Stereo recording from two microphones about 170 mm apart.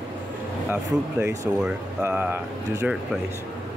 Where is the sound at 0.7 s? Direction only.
10° right (ahead or behind).